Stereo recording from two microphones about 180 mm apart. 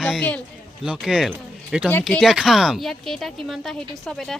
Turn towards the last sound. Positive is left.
turn(degrees=0)  # may be behind; listen again after turning